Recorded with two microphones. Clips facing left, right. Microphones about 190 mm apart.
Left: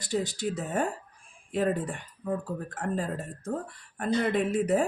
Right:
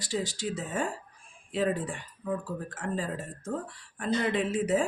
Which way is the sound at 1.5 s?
45° left (ahead or behind).